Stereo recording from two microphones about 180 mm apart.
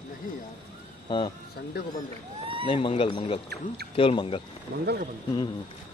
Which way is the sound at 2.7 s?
30° left (ahead or behind).